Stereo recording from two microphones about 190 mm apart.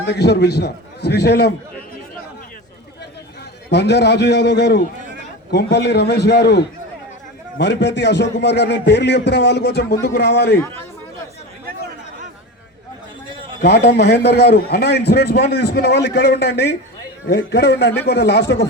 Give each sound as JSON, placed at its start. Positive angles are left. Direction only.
{"t": 0.0, "sound": "a man's voice", "side_deg": 60}
{"t": 3.7, "sound": "a man's voice", "side_deg": 60}
{"t": 13.6, "sound": "a man's voice", "side_deg": 60}